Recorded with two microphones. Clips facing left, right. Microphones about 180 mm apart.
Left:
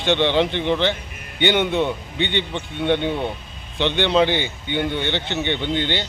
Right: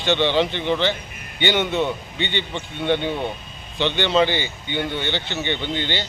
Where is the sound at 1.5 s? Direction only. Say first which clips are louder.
Even; 15° left (ahead or behind).